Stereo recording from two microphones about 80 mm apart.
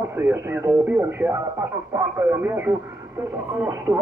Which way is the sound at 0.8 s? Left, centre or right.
Centre.